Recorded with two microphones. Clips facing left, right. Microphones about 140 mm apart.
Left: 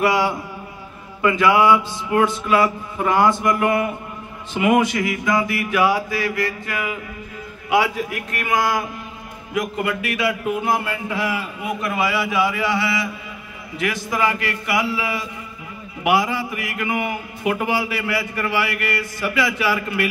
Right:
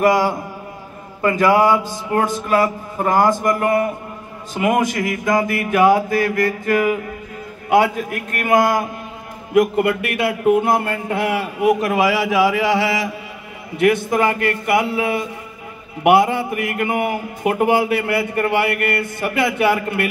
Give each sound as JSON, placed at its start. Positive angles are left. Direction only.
{"t": 0.0, "sound": "mantra", "side_deg": -45}
{"t": 9.5, "sound": "a man's voice", "side_deg": -55}
{"t": 13.7, "sound": "mantra", "side_deg": -55}
{"t": 16.0, "sound": "a man's voice", "side_deg": -55}